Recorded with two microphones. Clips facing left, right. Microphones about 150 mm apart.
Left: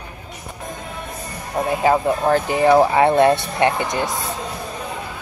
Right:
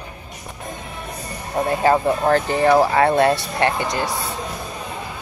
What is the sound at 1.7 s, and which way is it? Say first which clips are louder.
Speech: even; 5° left (ahead or behind).